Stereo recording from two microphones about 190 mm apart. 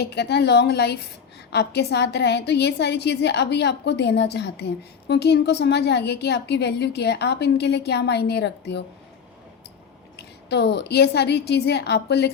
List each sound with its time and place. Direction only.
0.0 s a woman's voice: 60° left (ahead or behind)
10.2 s a woman's voice: 65° left (ahead or behind)